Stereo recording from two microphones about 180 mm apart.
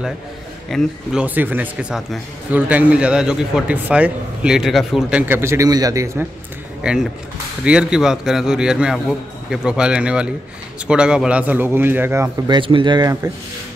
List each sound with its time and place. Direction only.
0.7 s a man's voice: centre (ahead or behind); by 6.2 s 15° right (ahead or behind)
6.8 s a man's voice: 5° right (ahead or behind)
12.4 s speech: 25° right (ahead or behind)